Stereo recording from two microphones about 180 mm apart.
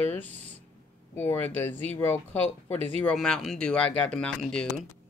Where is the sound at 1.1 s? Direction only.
10° left (ahead or behind).